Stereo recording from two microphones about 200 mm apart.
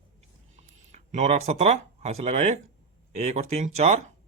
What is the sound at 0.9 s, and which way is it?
Speech, 35° right (ahead or behind).